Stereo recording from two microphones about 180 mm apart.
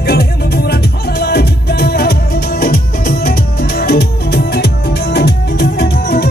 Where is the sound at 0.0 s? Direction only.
65° left (ahead or behind).